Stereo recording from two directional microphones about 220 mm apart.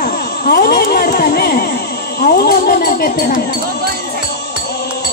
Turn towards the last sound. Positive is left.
turn(degrees=45)  # may be behind; listen again after turning